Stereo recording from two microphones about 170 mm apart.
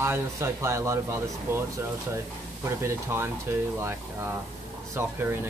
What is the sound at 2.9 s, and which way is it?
Speech, 15° right (ahead or behind).